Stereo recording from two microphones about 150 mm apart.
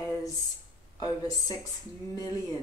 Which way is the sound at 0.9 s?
25° left (ahead or behind).